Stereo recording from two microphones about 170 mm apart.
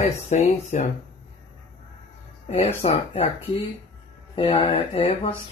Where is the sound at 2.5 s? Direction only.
35° left (ahead or behind).